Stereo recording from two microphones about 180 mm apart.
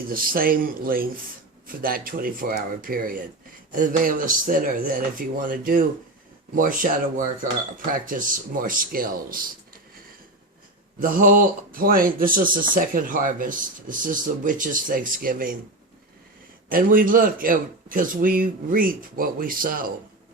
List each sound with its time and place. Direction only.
0.1 s speech: 55° right (ahead or behind)
11.0 s speech: 50° right (ahead or behind)
16.6 s speech: 50° right (ahead or behind)